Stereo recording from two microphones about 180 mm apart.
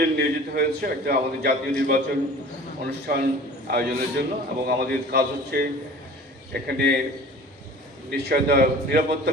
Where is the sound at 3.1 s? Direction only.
55° right (ahead or behind).